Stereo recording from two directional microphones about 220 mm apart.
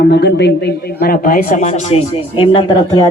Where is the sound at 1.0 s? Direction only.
40° left (ahead or behind).